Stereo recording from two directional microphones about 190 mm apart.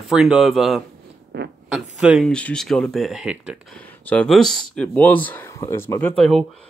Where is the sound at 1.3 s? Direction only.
60° right (ahead or behind).